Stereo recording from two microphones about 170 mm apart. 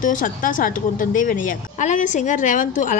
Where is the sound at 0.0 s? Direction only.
50° left (ahead or behind).